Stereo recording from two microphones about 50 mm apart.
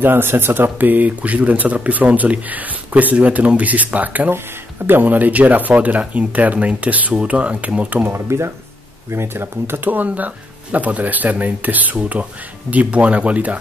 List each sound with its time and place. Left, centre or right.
0.0 s speech: right
8.1 s speech: right
9.1 s speech: right